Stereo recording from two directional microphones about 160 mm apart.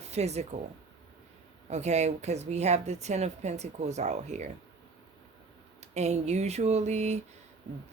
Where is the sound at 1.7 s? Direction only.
45° right (ahead or behind).